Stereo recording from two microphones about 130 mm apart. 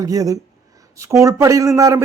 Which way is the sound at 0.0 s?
25° right (ahead or behind).